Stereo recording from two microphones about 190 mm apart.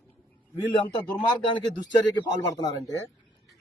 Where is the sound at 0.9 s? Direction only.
25° left (ahead or behind).